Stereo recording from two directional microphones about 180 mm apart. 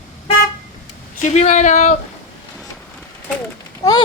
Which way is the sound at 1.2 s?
40° left (ahead or behind).